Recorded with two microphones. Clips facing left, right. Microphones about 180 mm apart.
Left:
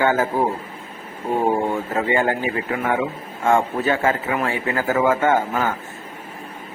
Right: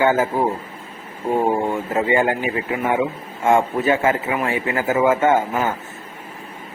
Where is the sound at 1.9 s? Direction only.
20° right (ahead or behind).